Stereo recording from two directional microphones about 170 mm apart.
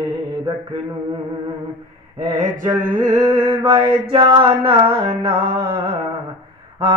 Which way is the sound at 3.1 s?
20° right (ahead or behind).